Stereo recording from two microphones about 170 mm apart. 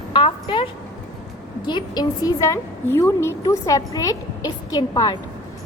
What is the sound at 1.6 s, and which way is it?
A woman's voice, 25° left (ahead or behind).